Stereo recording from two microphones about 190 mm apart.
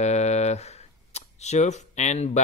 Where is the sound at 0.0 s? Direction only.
35° left (ahead or behind).